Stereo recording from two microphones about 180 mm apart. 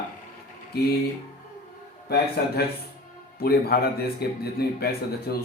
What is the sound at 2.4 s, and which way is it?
A man's voice, 60° left (ahead or behind).